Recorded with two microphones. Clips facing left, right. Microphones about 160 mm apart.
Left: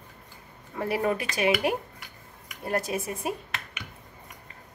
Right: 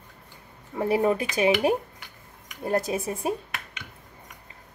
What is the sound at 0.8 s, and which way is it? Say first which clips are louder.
Speech: right 4 dB; 25° right (ahead or behind).